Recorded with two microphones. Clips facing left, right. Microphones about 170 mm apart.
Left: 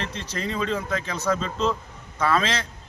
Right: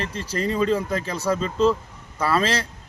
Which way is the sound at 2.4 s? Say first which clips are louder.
Right 3 dB; 35° right (ahead or behind).